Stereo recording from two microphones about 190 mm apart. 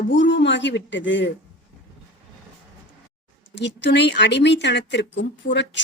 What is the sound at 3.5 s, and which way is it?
Speech, 70° left (ahead or behind).